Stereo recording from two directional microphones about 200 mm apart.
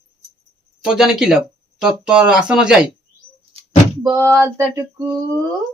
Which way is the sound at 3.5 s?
25° right (ahead or behind).